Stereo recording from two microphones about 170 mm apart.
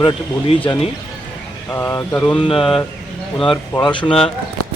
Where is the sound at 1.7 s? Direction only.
15° left (ahead or behind).